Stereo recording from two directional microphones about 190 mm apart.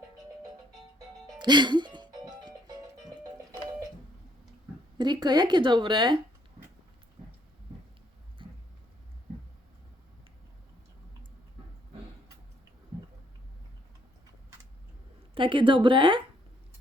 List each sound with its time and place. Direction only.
0.9 s music: 25° right (ahead or behind)
4.9 s speech: 20° right (ahead or behind)
8.4 s a sound: 25° right (ahead or behind)
15.4 s speech: 25° right (ahead or behind)